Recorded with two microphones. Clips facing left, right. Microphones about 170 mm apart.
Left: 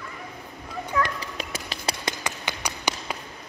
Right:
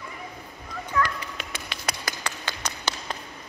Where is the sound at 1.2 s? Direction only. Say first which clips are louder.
Left 3 dB; 40° left (ahead or behind).